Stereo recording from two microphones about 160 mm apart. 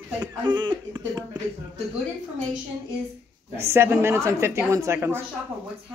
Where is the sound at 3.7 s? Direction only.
15° right (ahead or behind).